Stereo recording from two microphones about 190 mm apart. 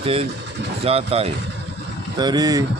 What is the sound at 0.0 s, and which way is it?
Speech, 30° right (ahead or behind).